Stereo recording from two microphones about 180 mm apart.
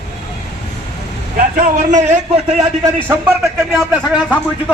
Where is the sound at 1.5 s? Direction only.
45° right (ahead or behind).